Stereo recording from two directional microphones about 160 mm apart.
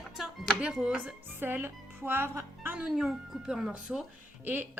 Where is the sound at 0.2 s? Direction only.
5° right (ahead or behind).